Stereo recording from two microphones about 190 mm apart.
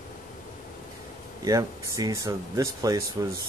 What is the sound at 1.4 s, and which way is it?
Speech, 20° right (ahead or behind).